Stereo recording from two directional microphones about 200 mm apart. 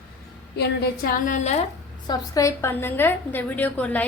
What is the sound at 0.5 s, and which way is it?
A woman's voice, 55° left (ahead or behind).